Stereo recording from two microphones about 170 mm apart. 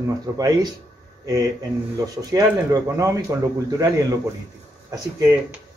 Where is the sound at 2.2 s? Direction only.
20° right (ahead or behind).